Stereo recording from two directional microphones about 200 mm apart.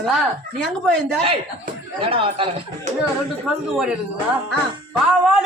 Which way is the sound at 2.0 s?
25° right (ahead or behind).